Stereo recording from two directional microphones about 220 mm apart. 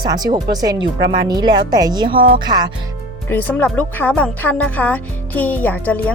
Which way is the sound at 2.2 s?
40° right (ahead or behind).